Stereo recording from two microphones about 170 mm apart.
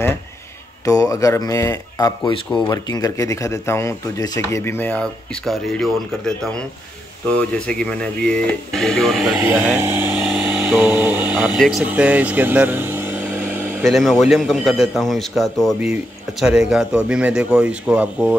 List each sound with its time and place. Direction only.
0.8 s speech: 20° left (ahead or behind); by 9.4 s centre (ahead or behind)
9.4 s speech: 10° right (ahead or behind)
10.2 s vehicle: 5° right (ahead or behind)
10.7 s a sound: 10° right (ahead or behind)
11.5 s speech: centre (ahead or behind)
11.9 s vehicle: 10° right (ahead or behind)
13.8 s speech: centre (ahead or behind)